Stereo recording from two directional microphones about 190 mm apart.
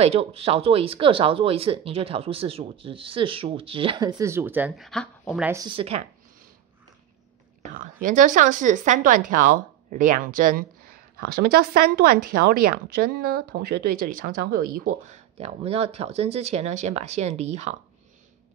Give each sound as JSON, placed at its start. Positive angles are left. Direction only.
{"t": 0.0, "sound": "speech", "side_deg": -30}
{"t": 5.4, "sound": "speech", "side_deg": -15}
{"t": 5.7, "sound": "speech", "side_deg": -30}
{"t": 7.8, "sound": "a woman's voice", "side_deg": -40}
{"t": 15.1, "sound": "speech", "side_deg": -30}